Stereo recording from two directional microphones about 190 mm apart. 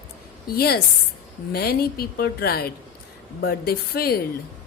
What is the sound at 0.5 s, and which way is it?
A woman's voice, 55° left (ahead or behind).